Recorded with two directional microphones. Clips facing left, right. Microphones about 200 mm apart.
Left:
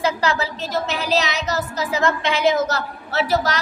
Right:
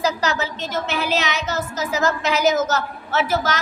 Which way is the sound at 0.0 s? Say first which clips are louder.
Left 1 dB; 30° left (ahead or behind).